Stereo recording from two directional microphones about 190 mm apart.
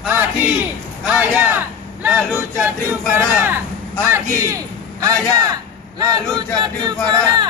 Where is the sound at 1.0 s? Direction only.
5° right (ahead or behind).